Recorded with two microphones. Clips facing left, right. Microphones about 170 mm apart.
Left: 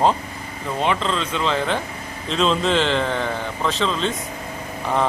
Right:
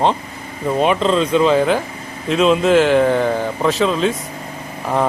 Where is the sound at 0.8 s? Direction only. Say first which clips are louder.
Right 7 dB; 15° right (ahead or behind).